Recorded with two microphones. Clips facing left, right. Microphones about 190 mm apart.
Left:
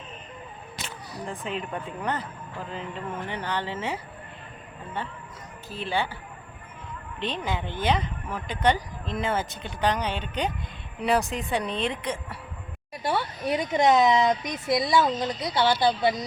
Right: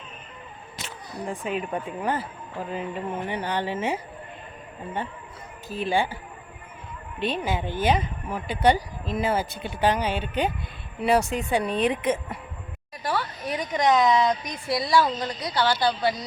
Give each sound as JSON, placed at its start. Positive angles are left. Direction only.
{"t": 1.4, "sound": "speech", "side_deg": -5}
{"t": 5.6, "sound": "speech", "side_deg": -15}
{"t": 7.2, "sound": "speech", "side_deg": -10}
{"t": 11.8, "sound": "speech", "side_deg": -15}
{"t": 13.0, "sound": "a woman's voice", "side_deg": 25}